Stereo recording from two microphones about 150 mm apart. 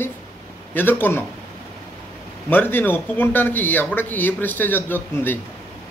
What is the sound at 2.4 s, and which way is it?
A man's voice, 15° left (ahead or behind).